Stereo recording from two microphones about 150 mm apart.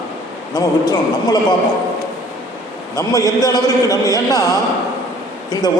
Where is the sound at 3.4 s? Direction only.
25° left (ahead or behind).